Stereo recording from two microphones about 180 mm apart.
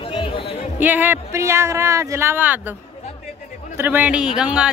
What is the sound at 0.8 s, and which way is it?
Speech, 10° right (ahead or behind).